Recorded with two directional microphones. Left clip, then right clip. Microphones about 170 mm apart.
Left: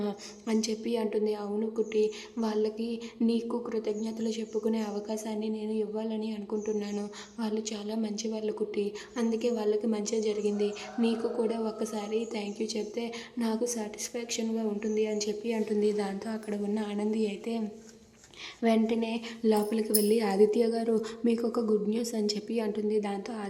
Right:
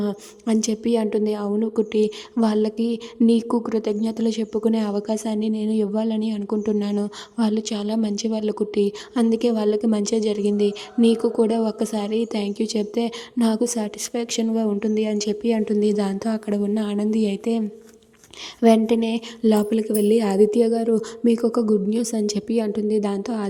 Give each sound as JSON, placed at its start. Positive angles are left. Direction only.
{"t": 0.0, "sound": "a woman's voice", "side_deg": -35}
{"t": 18.6, "sound": "a woman's voice", "side_deg": -35}